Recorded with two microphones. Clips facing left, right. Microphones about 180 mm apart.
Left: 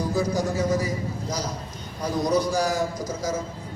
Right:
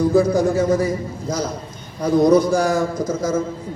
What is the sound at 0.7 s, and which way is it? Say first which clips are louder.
A man's voice: right 6 dB; 55° right (ahead or behind).